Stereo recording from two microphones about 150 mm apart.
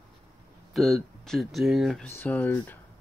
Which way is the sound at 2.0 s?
10° left (ahead or behind).